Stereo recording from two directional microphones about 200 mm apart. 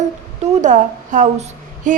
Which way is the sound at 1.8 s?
40° right (ahead or behind).